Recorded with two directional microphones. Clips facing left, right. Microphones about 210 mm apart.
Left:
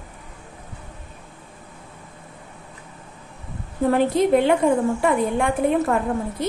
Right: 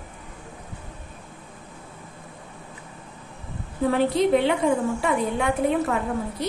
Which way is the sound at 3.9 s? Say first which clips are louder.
Left 2 dB; 50° left (ahead or behind).